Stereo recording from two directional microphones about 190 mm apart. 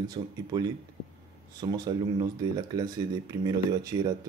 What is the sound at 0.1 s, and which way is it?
Speech, 20° right (ahead or behind).